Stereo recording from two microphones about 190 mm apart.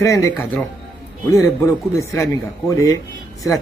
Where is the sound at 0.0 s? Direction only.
15° left (ahead or behind).